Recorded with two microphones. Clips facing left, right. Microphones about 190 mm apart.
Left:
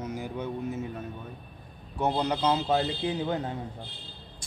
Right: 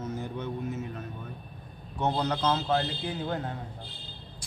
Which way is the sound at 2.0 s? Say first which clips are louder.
Left 1 dB; 10° left (ahead or behind).